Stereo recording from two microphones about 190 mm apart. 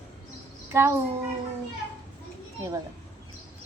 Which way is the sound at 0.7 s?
15° right (ahead or behind).